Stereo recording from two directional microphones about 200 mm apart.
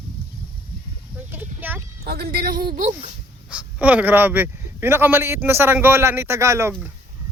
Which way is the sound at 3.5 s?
5° right (ahead or behind).